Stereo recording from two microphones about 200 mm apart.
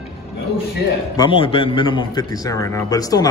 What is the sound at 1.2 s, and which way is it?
A man's voice, 25° left (ahead or behind).